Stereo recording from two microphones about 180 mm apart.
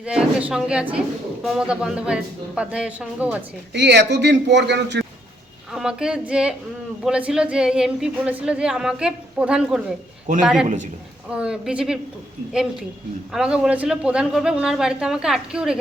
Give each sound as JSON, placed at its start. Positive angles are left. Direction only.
{"t": 0.0, "sound": "a woman's voice", "side_deg": -5}
{"t": 3.7, "sound": "a man's voice", "side_deg": -75}
{"t": 5.7, "sound": "a woman's voice", "side_deg": -5}
{"t": 13.3, "sound": "a woman's voice", "side_deg": -5}